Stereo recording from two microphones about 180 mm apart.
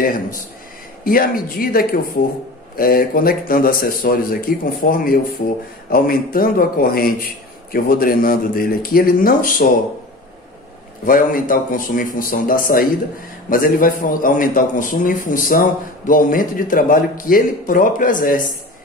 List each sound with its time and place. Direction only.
1.0 s a man's voice: 55° left (ahead or behind)
11.1 s a man's voice: 50° left (ahead or behind)